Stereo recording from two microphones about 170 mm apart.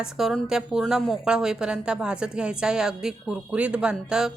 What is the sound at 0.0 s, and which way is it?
A woman's voice, 5° right (ahead or behind).